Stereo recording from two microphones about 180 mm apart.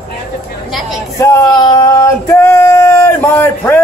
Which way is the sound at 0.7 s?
Centre (ahead or behind).